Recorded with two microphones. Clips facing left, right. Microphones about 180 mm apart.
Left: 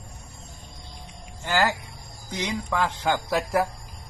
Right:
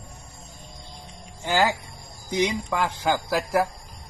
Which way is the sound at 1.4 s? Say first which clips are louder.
Right 2 dB; 15° right (ahead or behind).